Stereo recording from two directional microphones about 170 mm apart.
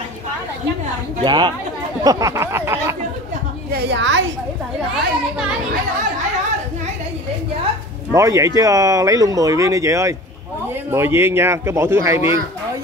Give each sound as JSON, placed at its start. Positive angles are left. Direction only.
{"t": 1.2, "sound": "speech", "side_deg": -25}
{"t": 3.7, "sound": "a woman's voice", "side_deg": -80}
{"t": 8.1, "sound": "speech", "side_deg": -20}